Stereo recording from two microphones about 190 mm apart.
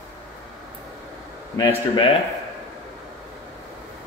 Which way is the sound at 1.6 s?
20° left (ahead or behind).